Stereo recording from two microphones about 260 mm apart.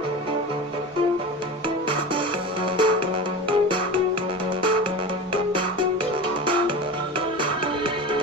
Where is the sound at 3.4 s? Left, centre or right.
Centre.